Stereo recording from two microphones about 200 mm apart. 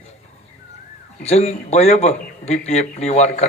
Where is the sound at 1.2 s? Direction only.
35° left (ahead or behind).